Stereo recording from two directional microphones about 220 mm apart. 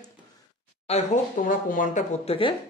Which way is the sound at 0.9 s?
35° left (ahead or behind).